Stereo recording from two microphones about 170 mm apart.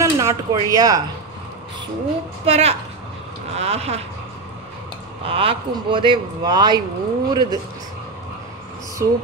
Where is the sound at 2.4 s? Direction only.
35° right (ahead or behind).